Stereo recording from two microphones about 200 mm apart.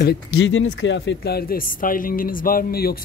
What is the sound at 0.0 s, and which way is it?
Speech, 55° left (ahead or behind).